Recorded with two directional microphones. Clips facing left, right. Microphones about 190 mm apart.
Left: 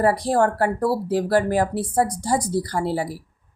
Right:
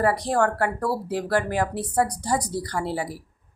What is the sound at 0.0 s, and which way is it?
A woman's voice, 35° left (ahead or behind).